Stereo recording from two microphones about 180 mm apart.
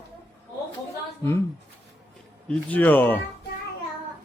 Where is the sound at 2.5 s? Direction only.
10° left (ahead or behind).